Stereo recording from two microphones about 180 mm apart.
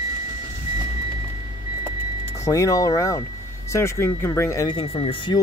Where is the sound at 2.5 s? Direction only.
15° left (ahead or behind).